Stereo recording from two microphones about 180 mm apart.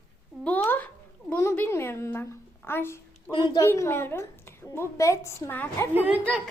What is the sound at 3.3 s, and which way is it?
Speech, 25° left (ahead or behind).